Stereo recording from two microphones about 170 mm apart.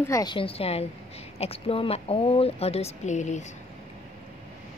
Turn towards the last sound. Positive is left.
turn(degrees=45)  # may be behind; listen again after turning